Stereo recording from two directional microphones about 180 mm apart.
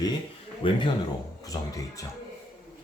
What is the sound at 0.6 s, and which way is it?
Speech, 25° left (ahead or behind).